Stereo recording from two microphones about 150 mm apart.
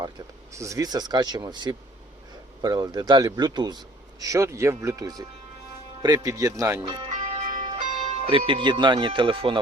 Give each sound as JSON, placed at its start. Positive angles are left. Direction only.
{"t": 0.5, "sound": "a man's voice", "side_deg": -20}
{"t": 6.8, "sound": "speech", "side_deg": -35}
{"t": 7.1, "sound": "music", "side_deg": -55}
{"t": 8.1, "sound": "speech", "side_deg": -40}